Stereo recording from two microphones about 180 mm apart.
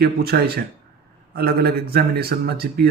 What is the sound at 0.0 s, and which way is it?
Speech, 60° right (ahead or behind).